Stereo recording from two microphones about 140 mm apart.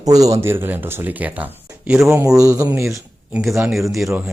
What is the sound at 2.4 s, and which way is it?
Speech, 20° right (ahead or behind).